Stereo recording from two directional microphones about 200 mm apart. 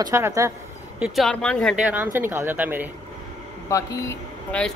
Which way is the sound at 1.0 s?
Centre (ahead or behind).